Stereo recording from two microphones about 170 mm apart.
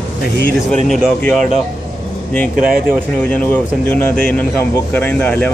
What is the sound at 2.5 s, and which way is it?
Speech, 55° right (ahead or behind).